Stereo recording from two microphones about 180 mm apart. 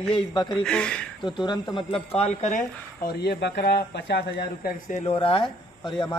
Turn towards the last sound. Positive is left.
turn(degrees=30)  # may be behind; listen again after turning